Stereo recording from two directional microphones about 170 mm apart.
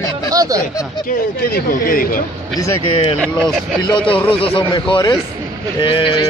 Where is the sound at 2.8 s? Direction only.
30° left (ahead or behind).